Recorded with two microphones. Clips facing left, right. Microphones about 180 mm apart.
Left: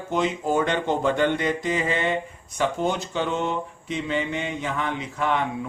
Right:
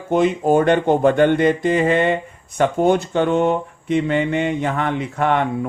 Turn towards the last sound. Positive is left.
turn(degrees=-55)  # may be behind; listen again after turning